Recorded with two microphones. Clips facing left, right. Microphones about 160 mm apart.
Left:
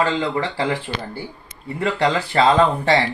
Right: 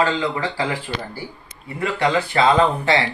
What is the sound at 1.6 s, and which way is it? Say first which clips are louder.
Speech: left 1 dB; 35° left (ahead or behind).